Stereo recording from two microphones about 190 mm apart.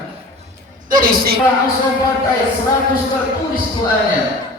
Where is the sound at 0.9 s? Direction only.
50° right (ahead or behind).